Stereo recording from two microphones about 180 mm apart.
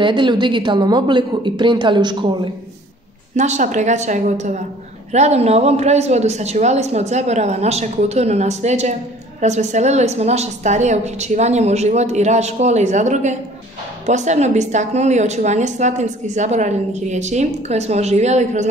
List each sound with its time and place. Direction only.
0.0 s speech: 25° right (ahead or behind)
3.3 s a woman's voice: 40° right (ahead or behind)